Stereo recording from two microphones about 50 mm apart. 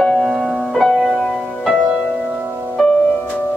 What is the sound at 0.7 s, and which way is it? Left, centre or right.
Music, centre.